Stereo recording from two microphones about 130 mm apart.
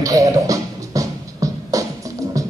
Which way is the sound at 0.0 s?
25° right (ahead or behind).